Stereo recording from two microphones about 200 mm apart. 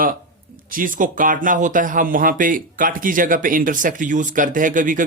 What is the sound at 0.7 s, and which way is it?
A man's voice, 45° right (ahead or behind).